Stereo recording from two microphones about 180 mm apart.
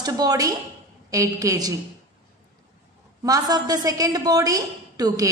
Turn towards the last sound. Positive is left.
turn(degrees=-20)  # may be behind; listen again after turning